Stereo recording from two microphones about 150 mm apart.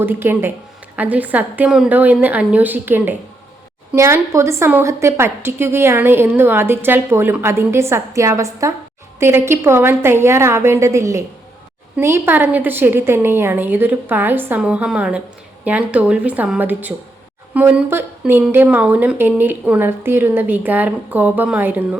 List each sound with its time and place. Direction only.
0.0 s a woman's voice: 15° right (ahead or behind)